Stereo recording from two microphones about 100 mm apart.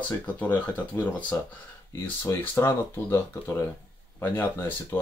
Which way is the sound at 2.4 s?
25° left (ahead or behind).